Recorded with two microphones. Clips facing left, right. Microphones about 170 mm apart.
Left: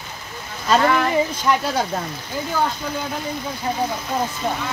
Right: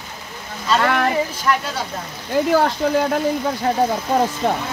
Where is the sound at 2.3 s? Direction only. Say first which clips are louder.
Right 7 dB; 70° right (ahead or behind).